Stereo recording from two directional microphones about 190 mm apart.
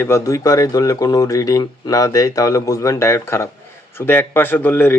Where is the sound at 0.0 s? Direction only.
15° left (ahead or behind).